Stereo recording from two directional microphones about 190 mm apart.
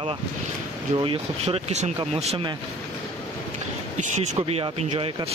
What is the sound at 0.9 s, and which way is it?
Speech, 30° right (ahead or behind).